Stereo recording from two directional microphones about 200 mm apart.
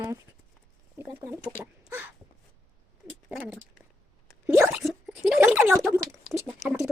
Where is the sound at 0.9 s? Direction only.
15° right (ahead or behind).